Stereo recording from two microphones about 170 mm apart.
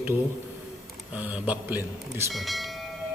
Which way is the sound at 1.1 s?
10° right (ahead or behind).